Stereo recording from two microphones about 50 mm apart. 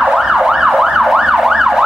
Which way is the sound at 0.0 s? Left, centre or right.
Centre.